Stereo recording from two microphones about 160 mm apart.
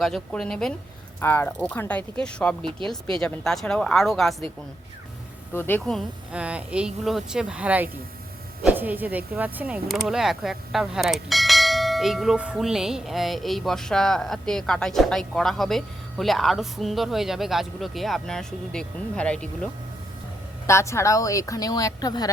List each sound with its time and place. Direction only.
0.0 s speech: centre (ahead or behind)
5.5 s speech: 10° left (ahead or behind)
20.7 s speech: 15° left (ahead or behind)